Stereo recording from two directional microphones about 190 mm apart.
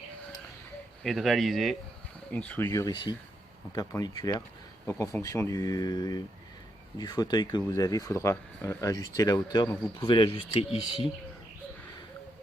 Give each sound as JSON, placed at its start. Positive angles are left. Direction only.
{"t": 1.0, "sound": "speech", "side_deg": 0}
{"t": 2.9, "sound": "speech", "side_deg": 25}